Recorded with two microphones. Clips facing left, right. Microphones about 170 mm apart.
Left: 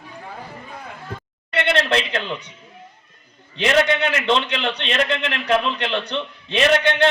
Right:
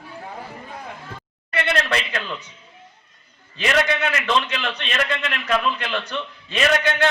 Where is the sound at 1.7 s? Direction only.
25° left (ahead or behind).